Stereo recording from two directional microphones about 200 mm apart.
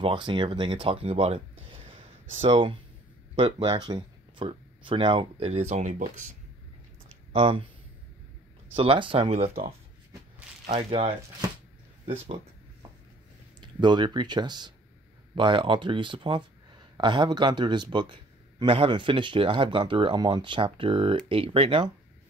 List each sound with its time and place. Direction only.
0.0 s a man's voice: 25° right (ahead or behind); by 6.3 s 40° right (ahead or behind)
7.3 s a man's voice: 25° right (ahead or behind)
8.7 s a man's voice: 25° right (ahead or behind)
13.6 s a man's voice: 20° right (ahead or behind)